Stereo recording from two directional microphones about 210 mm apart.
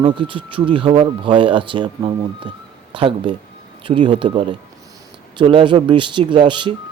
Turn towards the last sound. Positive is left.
turn(degrees=-25)  # may be behind; listen again after turning